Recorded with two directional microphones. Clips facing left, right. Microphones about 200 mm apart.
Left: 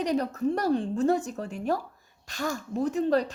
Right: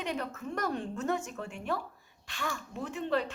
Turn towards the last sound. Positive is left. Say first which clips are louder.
# left 7 dB
turn(degrees=40)  # may be behind; listen again after turning